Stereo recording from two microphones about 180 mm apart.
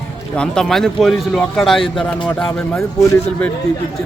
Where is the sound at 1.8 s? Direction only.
30° left (ahead or behind).